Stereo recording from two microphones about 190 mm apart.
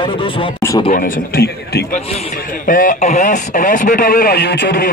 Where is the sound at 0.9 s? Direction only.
50° left (ahead or behind).